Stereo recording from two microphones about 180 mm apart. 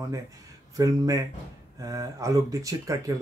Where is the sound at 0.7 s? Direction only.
20° right (ahead or behind).